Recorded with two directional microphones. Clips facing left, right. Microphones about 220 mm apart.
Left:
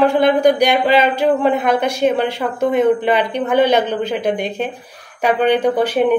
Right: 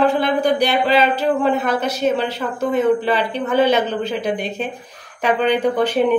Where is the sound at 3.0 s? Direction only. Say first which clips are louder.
Left 3 dB; 15° left (ahead or behind).